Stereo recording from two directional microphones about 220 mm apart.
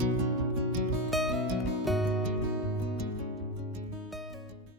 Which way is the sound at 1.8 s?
Centre (ahead or behind).